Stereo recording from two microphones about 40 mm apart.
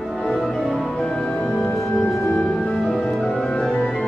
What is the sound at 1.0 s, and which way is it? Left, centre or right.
Music, left.